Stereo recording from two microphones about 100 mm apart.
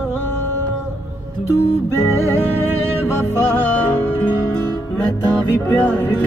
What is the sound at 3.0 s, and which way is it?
Music, 25° left (ahead or behind).